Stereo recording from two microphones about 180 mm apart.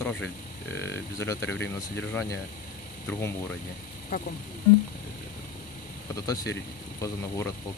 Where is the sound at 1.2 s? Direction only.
15° left (ahead or behind).